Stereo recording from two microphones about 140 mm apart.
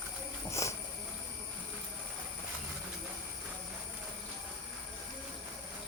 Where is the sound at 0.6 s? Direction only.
20° left (ahead or behind).